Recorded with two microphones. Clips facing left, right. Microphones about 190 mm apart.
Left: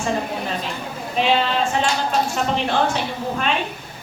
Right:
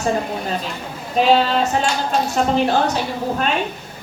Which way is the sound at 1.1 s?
40° right (ahead or behind).